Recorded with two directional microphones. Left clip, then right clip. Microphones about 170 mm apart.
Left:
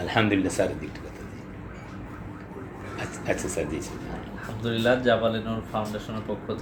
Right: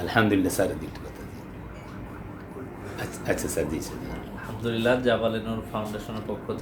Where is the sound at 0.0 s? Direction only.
20° right (ahead or behind).